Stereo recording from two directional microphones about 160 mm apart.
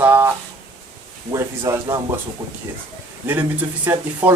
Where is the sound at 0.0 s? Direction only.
10° right (ahead or behind).